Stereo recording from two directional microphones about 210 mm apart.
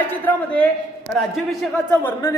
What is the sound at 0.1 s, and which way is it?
A woman's voice, 10° left (ahead or behind).